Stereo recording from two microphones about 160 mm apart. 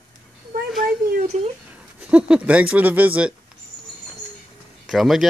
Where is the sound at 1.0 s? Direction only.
60° right (ahead or behind).